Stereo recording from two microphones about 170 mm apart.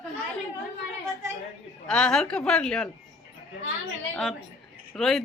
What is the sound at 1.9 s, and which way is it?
Speech, 5° left (ahead or behind).